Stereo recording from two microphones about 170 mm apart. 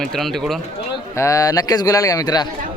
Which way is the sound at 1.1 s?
20° left (ahead or behind).